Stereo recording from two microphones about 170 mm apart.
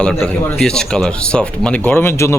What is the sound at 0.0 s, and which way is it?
A man's voice, 5° left (ahead or behind).